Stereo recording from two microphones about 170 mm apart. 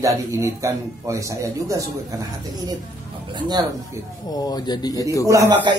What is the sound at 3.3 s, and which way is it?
Speech, 25° right (ahead or behind).